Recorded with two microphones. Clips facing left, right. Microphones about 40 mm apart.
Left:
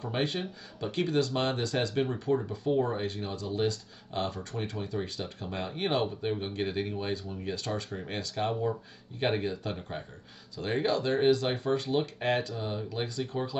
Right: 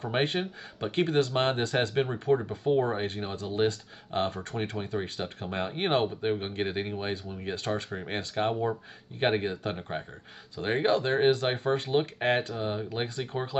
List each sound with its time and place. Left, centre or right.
0.0 s speech: right